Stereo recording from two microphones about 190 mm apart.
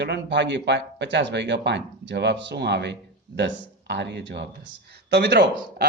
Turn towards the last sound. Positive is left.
turn(degrees=-65)  # may be behind; listen again after turning